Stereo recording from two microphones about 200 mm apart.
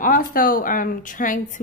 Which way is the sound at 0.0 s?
45° left (ahead or behind).